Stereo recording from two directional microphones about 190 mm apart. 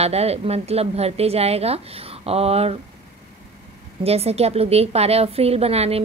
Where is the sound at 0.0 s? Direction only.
35° right (ahead or behind).